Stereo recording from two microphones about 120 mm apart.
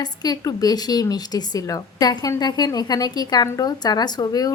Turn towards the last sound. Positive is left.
turn(degrees=35)  # may be behind; listen again after turning